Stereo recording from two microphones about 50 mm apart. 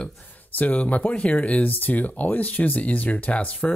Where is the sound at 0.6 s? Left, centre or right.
Left.